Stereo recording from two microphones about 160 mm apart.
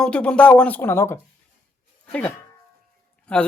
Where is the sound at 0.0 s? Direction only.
5° left (ahead or behind).